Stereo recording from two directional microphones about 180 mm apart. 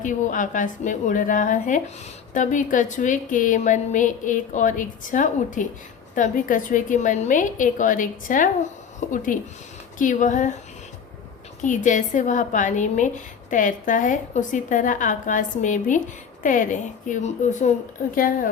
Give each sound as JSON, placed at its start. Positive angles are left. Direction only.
{"t": 0.0, "sound": "a woman's voice", "side_deg": 45}
{"t": 11.6, "sound": "a woman's voice", "side_deg": 45}